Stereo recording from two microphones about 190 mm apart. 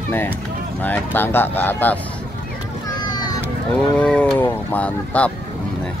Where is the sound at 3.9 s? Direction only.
5° left (ahead or behind).